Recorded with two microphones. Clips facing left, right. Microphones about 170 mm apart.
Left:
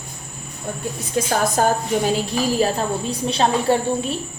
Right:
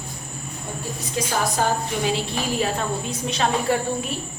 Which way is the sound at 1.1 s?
50° left (ahead or behind).